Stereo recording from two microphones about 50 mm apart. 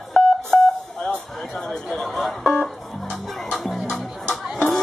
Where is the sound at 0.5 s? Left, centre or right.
Centre.